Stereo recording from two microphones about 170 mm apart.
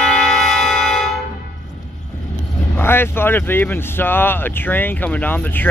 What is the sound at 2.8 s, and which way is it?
Speech, 15° left (ahead or behind).